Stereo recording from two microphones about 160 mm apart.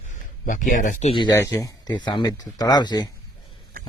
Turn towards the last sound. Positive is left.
turn(degrees=25)  # may be behind; listen again after turning